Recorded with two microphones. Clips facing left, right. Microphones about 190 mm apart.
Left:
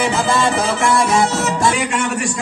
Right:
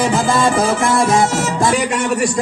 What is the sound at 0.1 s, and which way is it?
Music, 50° right (ahead or behind).